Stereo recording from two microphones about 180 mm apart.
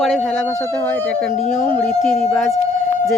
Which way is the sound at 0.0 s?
5° left (ahead or behind).